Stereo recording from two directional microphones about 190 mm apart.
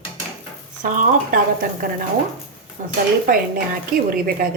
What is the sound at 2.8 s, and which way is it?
Speech, 40° right (ahead or behind).